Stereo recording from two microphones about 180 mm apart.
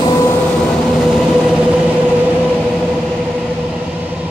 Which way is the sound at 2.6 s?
Centre (ahead or behind).